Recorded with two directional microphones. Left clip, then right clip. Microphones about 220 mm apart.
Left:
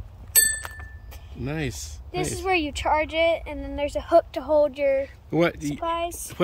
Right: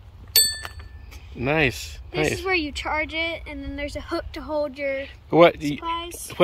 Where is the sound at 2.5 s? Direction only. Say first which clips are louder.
Left 2 dB; 55° left (ahead or behind).